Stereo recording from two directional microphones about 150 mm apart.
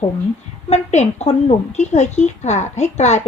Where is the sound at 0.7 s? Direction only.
45° left (ahead or behind).